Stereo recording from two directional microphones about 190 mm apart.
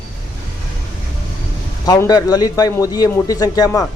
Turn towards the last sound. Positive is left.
turn(degrees=20)  # may be behind; listen again after turning